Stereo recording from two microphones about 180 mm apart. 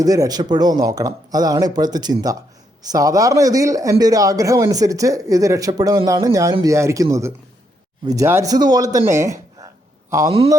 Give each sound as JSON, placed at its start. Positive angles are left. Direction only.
{"t": 0.0, "sound": "a man's voice", "side_deg": -20}